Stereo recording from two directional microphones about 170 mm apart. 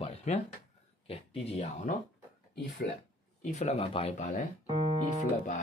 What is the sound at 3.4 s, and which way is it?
Speech, 40° left (ahead or behind).